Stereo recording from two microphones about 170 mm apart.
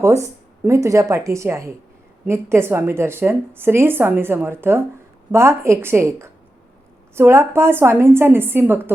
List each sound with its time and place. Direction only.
0.0 s a woman's voice: 15° right (ahead or behind)